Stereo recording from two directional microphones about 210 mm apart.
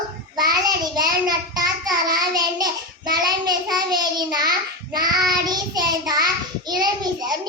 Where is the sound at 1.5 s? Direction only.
20° right (ahead or behind).